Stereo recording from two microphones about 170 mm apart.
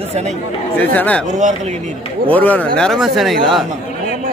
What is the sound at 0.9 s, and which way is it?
Speech, 10° left (ahead or behind).